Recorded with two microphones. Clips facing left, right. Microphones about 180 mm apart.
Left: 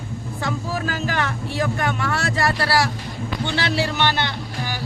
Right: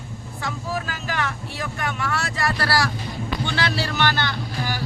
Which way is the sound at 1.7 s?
35° left (ahead or behind).